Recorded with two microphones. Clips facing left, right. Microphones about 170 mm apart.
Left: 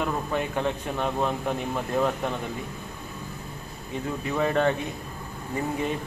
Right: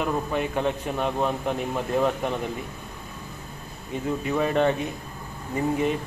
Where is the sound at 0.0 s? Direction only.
15° right (ahead or behind).